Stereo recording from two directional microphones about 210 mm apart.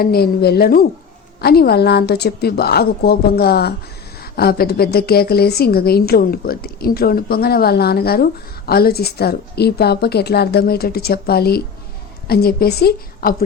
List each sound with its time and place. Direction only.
0.0 s a woman's voice: 45° left (ahead or behind)